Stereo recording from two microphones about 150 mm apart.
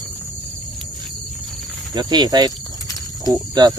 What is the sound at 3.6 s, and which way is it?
Speech, 30° right (ahead or behind).